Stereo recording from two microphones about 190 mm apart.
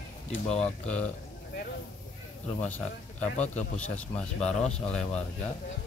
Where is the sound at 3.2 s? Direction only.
40° left (ahead or behind).